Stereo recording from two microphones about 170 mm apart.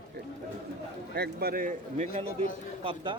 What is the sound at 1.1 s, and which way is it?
Speech, 65° right (ahead or behind).